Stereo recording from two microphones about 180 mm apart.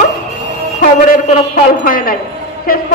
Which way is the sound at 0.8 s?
50° left (ahead or behind).